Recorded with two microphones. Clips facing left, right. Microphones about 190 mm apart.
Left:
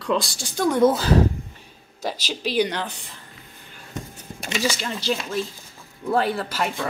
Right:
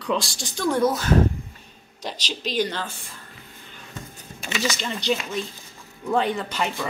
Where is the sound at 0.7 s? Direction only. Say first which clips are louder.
Left 3 dB; 25° left (ahead or behind).